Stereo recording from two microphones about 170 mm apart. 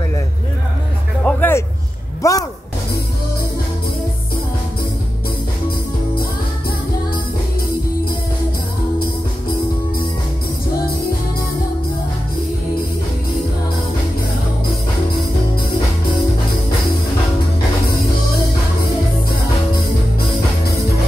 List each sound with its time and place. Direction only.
1.2 s music: 10° left (ahead or behind)